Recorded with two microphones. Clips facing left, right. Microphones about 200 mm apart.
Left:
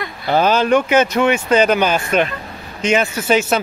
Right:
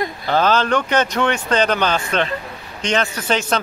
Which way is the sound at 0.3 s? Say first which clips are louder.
Left 3 dB; 15° left (ahead or behind).